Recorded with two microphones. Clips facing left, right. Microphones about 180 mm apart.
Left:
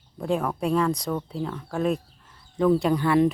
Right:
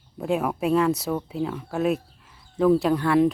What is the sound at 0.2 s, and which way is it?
Speech, 5° right (ahead or behind).